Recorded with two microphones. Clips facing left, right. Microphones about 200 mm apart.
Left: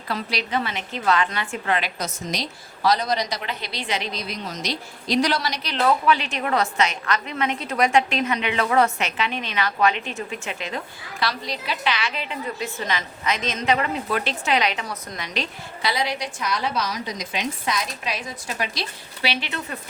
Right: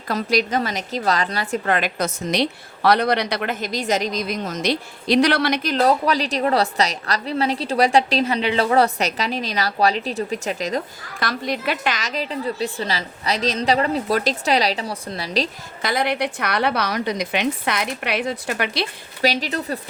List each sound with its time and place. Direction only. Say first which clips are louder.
0.1 s a woman's voice: right 6 dB; 45° right (ahead or behind)
5.7 s a woman's voice: even; 40° right (ahead or behind)
15.8 s a woman's voice: right 4 dB; 50° right (ahead or behind)
19.2 s a woman's voice: right 6 dB; 40° right (ahead or behind)